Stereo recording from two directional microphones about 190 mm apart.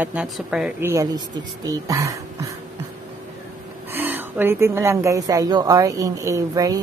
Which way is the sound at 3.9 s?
10° right (ahead or behind).